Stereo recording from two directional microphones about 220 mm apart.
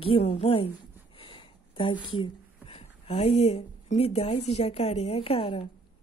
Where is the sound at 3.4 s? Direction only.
30° left (ahead or behind).